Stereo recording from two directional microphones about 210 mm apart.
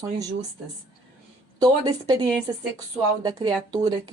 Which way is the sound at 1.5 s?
20° right (ahead or behind).